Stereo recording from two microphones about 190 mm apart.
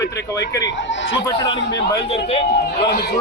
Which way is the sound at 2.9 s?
60° left (ahead or behind).